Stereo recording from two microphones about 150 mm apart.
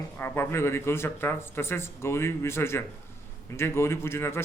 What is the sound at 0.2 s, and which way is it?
A man's voice, 15° left (ahead or behind).